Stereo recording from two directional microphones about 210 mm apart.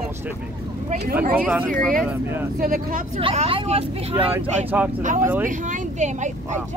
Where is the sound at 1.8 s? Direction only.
Centre (ahead or behind).